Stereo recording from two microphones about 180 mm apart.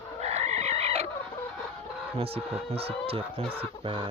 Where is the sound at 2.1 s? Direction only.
35° right (ahead or behind).